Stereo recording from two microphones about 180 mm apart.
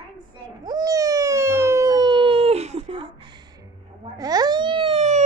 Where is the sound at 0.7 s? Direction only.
20° right (ahead or behind).